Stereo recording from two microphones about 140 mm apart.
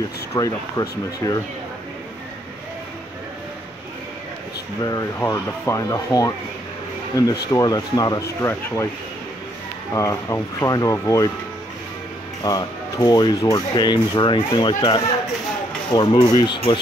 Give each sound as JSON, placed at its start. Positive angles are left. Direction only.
{"t": 0.3, "sound": "speech", "side_deg": 25}
{"t": 4.8, "sound": "speech", "side_deg": 25}
{"t": 9.9, "sound": "speech", "side_deg": 20}
{"t": 12.4, "sound": "speech", "side_deg": 25}
{"t": 15.9, "sound": "speech", "side_deg": 30}